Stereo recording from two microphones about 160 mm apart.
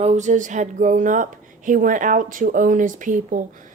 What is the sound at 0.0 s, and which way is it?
Speech, 45° right (ahead or behind).